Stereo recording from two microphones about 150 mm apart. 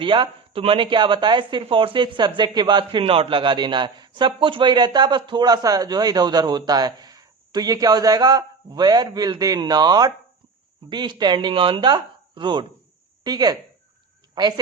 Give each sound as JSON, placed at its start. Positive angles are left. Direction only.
{"t": 0.0, "sound": "a man's voice", "side_deg": -35}